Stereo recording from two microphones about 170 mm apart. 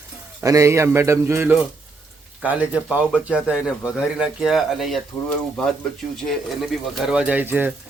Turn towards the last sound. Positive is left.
turn(degrees=-10)  # may be behind; listen again after turning